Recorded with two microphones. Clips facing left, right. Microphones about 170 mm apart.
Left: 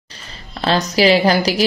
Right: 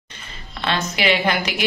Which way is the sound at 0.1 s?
35° left (ahead or behind).